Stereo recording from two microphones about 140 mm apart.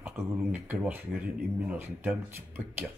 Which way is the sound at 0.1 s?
15° right (ahead or behind).